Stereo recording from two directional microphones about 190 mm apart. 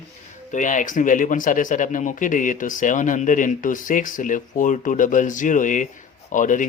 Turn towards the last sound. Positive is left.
turn(degrees=40)  # may be behind; listen again after turning